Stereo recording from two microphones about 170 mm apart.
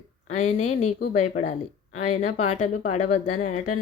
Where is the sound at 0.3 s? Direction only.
45° left (ahead or behind).